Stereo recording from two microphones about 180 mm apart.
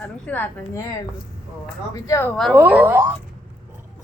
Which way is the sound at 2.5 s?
10° right (ahead or behind).